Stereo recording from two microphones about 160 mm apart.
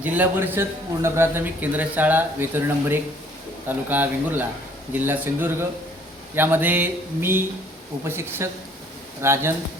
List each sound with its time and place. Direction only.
0.0 s a man's voice: 10° right (ahead or behind)